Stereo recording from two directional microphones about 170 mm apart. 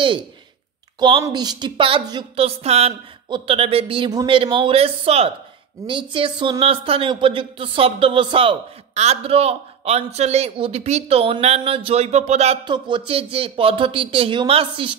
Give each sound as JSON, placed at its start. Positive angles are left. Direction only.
{"t": 0.9, "sound": "speech", "side_deg": -25}
{"t": 12.6, "sound": "speech", "side_deg": -25}